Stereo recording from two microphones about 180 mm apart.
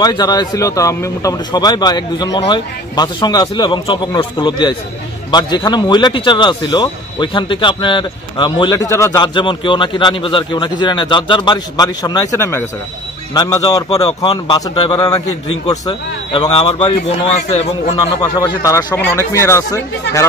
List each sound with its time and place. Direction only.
0.0 s speech: 20° left (ahead or behind); by 17.9 s 40° left (ahead or behind)
18.2 s speech: 20° left (ahead or behind)